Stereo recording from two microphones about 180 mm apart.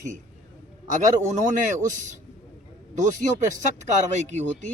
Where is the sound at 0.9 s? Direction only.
45° right (ahead or behind).